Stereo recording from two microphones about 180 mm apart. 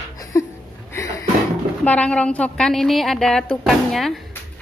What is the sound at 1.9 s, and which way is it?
A woman's voice, 5° left (ahead or behind).